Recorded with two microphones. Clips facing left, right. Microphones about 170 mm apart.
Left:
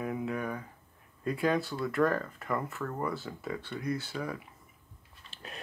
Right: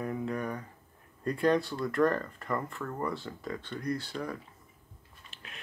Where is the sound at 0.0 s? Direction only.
5° left (ahead or behind).